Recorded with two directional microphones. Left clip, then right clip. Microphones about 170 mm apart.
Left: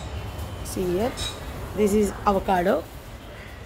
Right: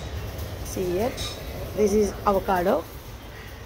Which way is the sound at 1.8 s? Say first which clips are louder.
Even; 25° left (ahead or behind).